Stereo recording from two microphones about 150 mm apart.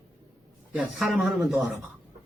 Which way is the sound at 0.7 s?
5° right (ahead or behind).